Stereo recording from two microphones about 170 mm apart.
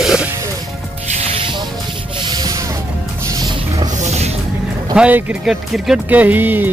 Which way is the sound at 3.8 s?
45° right (ahead or behind).